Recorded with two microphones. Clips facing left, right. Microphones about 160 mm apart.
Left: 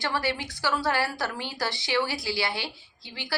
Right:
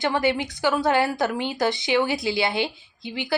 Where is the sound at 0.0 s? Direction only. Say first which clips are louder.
Right 7 dB; 20° right (ahead or behind).